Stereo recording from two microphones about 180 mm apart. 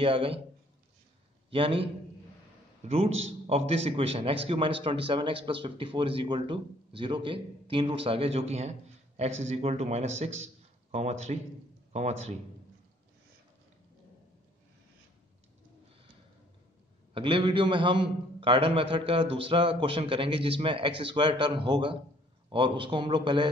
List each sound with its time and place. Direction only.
0.0 s a man's voice: 30° right (ahead or behind)
1.5 s a man's voice: 30° right (ahead or behind)
17.1 s a man's voice: 30° right (ahead or behind)